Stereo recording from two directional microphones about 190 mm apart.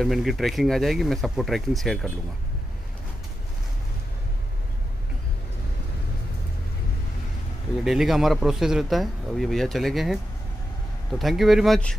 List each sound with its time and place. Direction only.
0.0 s speech: centre (ahead or behind)
7.8 s speech: centre (ahead or behind)
11.1 s speech: centre (ahead or behind)